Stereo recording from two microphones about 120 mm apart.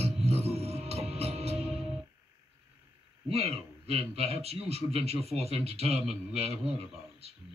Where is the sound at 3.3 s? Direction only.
60° right (ahead or behind).